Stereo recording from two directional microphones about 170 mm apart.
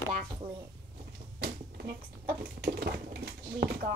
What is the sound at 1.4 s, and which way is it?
Typewriter, 70° right (ahead or behind).